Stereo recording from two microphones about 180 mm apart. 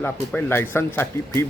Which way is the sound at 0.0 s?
10° left (ahead or behind).